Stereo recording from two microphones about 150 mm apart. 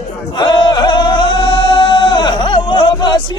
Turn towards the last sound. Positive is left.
turn(degrees=30)  # may be behind; listen again after turning